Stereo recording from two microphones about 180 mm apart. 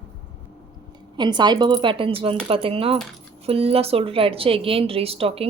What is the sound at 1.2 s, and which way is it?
Speech, 25° right (ahead or behind).